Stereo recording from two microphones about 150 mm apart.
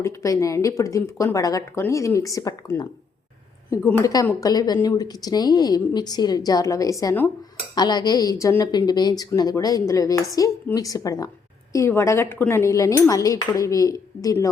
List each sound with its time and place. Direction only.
0.0 s a woman's voice: 20° left (ahead or behind)
3.8 s a woman's voice: 20° left (ahead or behind)